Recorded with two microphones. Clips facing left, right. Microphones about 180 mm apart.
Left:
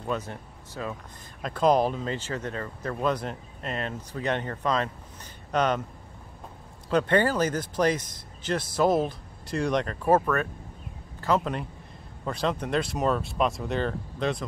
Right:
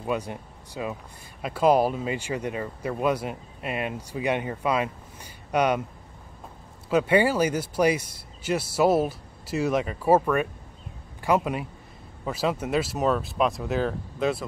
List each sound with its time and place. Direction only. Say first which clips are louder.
0.0 s speech: right 3 dB; 10° right (ahead or behind)
6.9 s a man's voice: right 2 dB; 10° right (ahead or behind)